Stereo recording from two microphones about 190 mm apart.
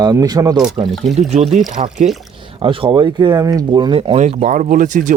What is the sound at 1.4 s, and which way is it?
Speech, centre (ahead or behind).